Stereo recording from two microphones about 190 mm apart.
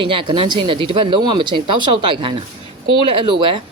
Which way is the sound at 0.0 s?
25° right (ahead or behind).